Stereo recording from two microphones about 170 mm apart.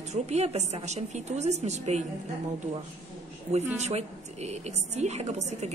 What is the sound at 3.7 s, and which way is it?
A woman's voice, 40° right (ahead or behind).